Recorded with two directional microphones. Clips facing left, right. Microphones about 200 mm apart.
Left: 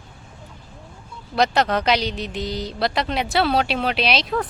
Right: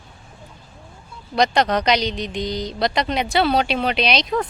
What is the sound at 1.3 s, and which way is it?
Speech, 5° left (ahead or behind).